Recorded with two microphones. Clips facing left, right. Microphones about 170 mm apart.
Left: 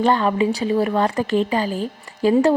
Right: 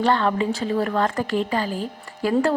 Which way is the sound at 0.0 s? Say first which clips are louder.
Left 3 dB; 15° left (ahead or behind).